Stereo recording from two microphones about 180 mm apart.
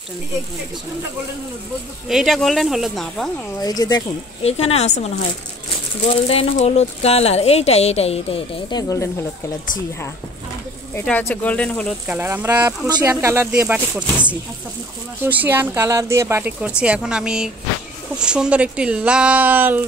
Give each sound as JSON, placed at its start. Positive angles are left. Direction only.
{"t": 2.0, "sound": "speech", "side_deg": 0}
{"t": 3.5, "sound": "speech", "side_deg": 20}
{"t": 4.4, "sound": "speech", "side_deg": 35}
{"t": 6.0, "sound": "speech", "side_deg": 35}
{"t": 11.1, "sound": "speech", "side_deg": 5}
{"t": 12.1, "sound": "speech", "side_deg": -10}
{"t": 15.2, "sound": "speech", "side_deg": -10}